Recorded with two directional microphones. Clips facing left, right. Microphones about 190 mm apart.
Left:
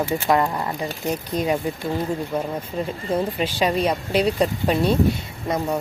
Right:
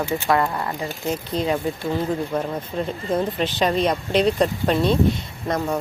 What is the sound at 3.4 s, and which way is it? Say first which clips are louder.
Speech: right 1 dB; 10° left (ahead or behind).